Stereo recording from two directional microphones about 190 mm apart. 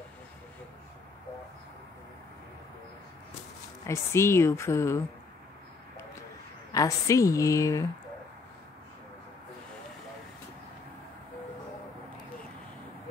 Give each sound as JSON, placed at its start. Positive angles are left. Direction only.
{"t": 3.8, "sound": "a woman's voice", "side_deg": 15}
{"t": 6.7, "sound": "a woman's voice", "side_deg": 15}